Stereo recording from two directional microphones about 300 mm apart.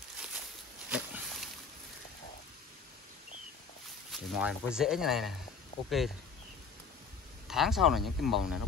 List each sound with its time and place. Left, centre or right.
0.8 s a sound: centre
4.1 s speech: centre
7.4 s speech: centre